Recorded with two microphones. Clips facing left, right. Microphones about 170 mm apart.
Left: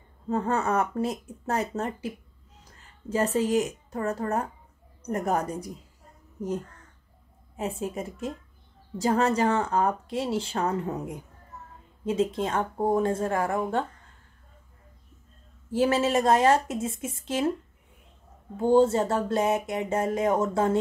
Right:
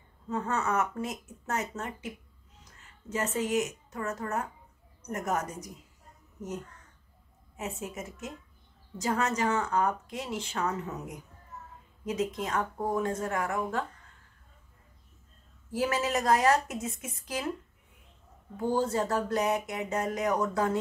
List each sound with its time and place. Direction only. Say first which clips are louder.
0.3 s speech: left 5 dB; 35° left (ahead or behind)
7.5 s speech: left 6 dB; 30° left (ahead or behind)
15.7 s speech: left 6 dB; 25° left (ahead or behind)
18.6 s speech: left 8 dB; 25° left (ahead or behind)